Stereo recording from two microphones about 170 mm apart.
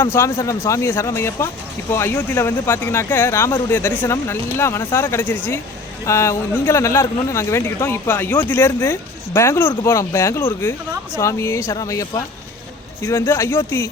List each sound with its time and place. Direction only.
0.0 s a man's voice: 15° left (ahead or behind)